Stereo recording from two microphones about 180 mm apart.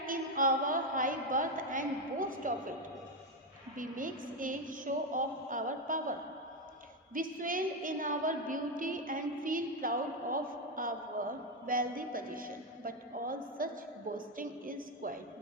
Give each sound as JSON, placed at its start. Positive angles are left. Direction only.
{"t": 0.0, "sound": "a woman's voice", "side_deg": -50}
{"t": 3.8, "sound": "a woman's voice", "side_deg": -50}